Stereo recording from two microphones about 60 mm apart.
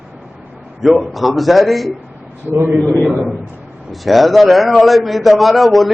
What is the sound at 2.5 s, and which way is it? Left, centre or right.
Speech, right.